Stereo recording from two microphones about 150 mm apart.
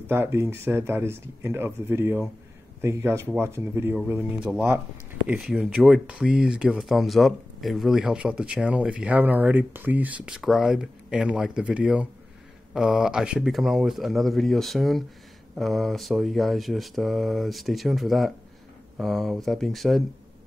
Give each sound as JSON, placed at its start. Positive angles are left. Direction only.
{"t": 0.0, "sound": "speech", "side_deg": -15}